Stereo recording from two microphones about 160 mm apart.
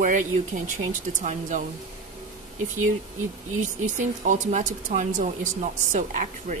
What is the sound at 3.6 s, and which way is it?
A woman's voice, 50° right (ahead or behind).